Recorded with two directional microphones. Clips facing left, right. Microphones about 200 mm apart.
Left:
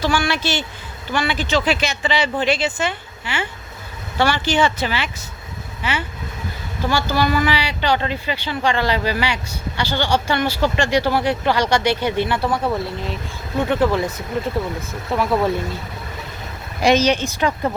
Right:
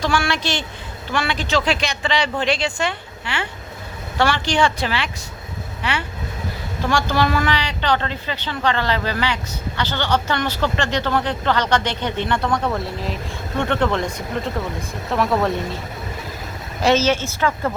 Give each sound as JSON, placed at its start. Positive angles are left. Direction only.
{"t": 0.0, "sound": "speech", "side_deg": 0}
{"t": 16.8, "sound": "speech", "side_deg": 15}